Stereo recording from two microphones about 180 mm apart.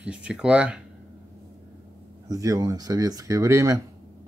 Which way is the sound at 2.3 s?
20° right (ahead or behind).